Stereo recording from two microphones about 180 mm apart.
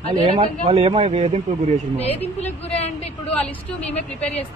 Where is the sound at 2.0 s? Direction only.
35° left (ahead or behind).